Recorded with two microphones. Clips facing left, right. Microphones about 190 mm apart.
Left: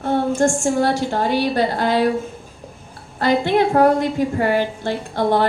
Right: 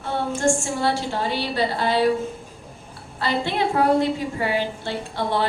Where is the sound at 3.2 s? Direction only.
45° left (ahead or behind).